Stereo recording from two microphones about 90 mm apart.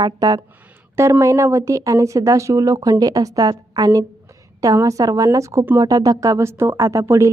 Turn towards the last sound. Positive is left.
turn(degrees=-35)  # may be behind; listen again after turning